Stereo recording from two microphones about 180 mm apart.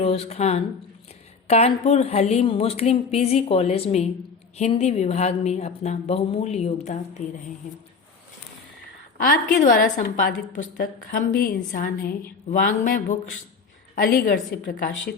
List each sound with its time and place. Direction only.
0.0 s a woman's voice: 35° left (ahead or behind)
9.1 s a woman's voice: 50° left (ahead or behind)